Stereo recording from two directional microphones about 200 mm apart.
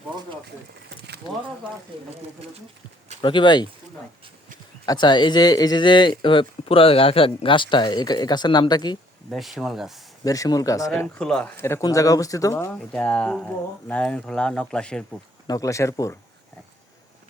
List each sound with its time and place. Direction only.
0.4 s a sound: 55° right (ahead or behind)
3.2 s speech: 25° left (ahead or behind)
4.9 s speech: 20° left (ahead or behind)
9.3 s speech: centre (ahead or behind)
10.2 s speech: 15° left (ahead or behind)
11.0 s speech: 5° left (ahead or behind)
15.4 s speech: 15° left (ahead or behind)